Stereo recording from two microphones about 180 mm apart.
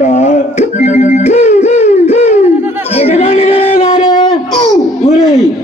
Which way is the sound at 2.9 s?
35° left (ahead or behind).